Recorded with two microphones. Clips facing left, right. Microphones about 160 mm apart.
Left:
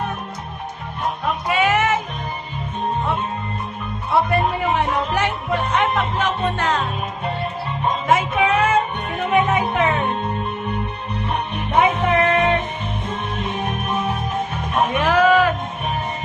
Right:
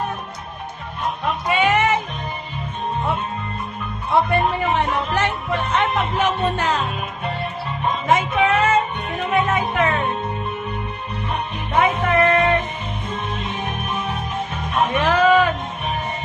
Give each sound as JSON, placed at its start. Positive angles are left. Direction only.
{"t": 1.5, "sound": "music", "side_deg": 5}
{"t": 4.1, "sound": "music", "side_deg": 5}
{"t": 6.1, "sound": "music", "side_deg": -5}
{"t": 8.0, "sound": "music", "side_deg": 5}
{"t": 11.7, "sound": "music", "side_deg": 15}
{"t": 14.9, "sound": "music", "side_deg": 10}